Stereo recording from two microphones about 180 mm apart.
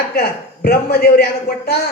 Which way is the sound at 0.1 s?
60° left (ahead or behind).